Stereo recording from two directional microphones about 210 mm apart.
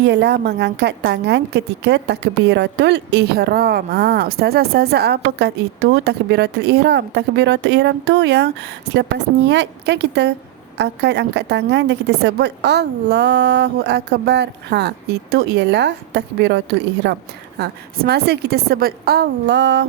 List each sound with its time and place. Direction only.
0.0 s a woman's voice: 55° right (ahead or behind)
17.6 s a woman's voice: 45° right (ahead or behind)